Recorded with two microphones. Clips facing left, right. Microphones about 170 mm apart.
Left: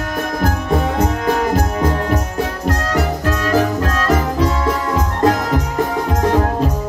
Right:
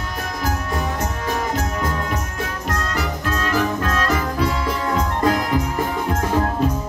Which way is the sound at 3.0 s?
40° left (ahead or behind).